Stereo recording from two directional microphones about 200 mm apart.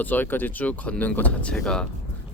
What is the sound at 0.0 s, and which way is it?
Speech, 10° left (ahead or behind).